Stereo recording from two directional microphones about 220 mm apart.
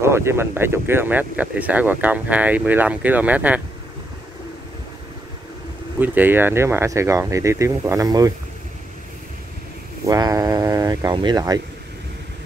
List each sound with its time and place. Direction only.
0.0 s speech: 10° right (ahead or behind)
5.9 s speech: 10° right (ahead or behind)
10.0 s speech: 15° right (ahead or behind)